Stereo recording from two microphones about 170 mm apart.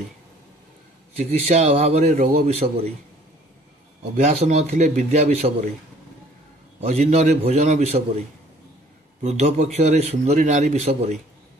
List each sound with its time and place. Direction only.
1.1 s a man's voice: 40° right (ahead or behind)
4.2 s a man's voice: 40° right (ahead or behind)
6.9 s a man's voice: 40° right (ahead or behind)
9.2 s a man's voice: 40° right (ahead or behind)